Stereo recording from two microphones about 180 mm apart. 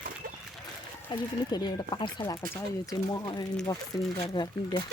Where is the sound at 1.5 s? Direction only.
25° left (ahead or behind).